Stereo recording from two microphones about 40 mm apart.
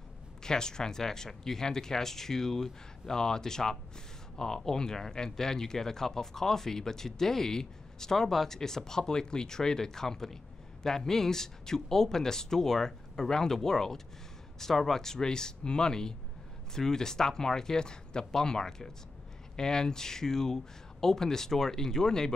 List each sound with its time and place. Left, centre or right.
0.4 s speech: centre